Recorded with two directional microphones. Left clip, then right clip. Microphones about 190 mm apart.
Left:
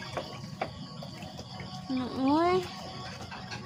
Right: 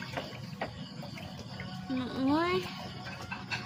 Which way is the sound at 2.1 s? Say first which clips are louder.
Left 4 dB; 15° left (ahead or behind).